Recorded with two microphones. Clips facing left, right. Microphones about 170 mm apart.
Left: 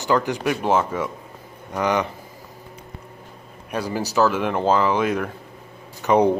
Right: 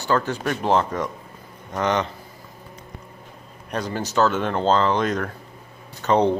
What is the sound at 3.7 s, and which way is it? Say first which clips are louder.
Speech: left 1 dB; 5° left (ahead or behind).